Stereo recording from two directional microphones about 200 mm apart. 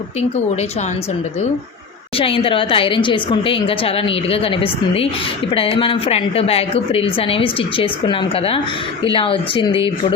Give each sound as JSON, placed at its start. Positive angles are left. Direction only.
{"t": 2.1, "sound": "a woman's voice", "side_deg": 25}